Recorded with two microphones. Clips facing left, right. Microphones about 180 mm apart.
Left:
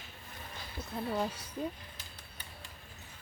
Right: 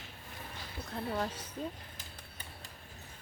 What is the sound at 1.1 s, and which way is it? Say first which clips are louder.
Speech: left 2 dB; 10° left (ahead or behind).